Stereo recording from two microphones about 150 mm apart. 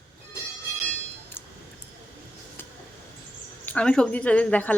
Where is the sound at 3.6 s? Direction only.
5° left (ahead or behind).